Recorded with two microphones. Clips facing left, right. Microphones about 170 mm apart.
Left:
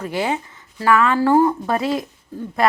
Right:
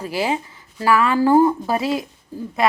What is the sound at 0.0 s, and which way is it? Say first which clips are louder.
Speech: even; 30° right (ahead or behind).